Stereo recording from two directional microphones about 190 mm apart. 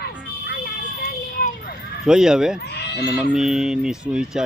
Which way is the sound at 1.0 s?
50° left (ahead or behind).